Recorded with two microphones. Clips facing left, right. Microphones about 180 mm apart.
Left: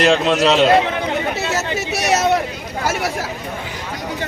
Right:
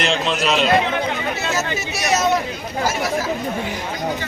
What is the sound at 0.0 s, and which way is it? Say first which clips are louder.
Speech: left 6 dB; 45° left (ahead or behind).